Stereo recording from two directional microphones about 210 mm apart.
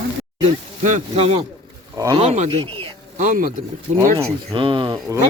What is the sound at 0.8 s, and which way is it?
Speech, 30° right (ahead or behind).